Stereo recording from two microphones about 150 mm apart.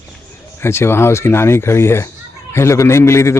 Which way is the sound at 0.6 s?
15° left (ahead or behind).